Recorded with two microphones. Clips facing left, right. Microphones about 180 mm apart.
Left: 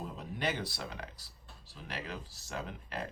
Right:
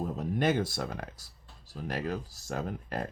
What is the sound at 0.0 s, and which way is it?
Speech, 45° right (ahead or behind).